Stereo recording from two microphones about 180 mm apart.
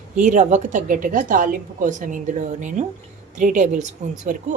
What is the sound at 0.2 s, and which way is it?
A woman's voice, 45° right (ahead or behind).